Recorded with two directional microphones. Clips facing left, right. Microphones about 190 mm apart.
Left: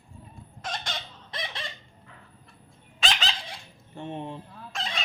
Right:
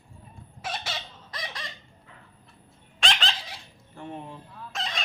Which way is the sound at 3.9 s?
25° left (ahead or behind).